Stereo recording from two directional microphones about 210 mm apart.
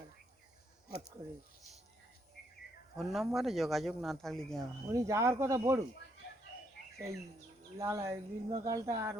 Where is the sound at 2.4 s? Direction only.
50° left (ahead or behind).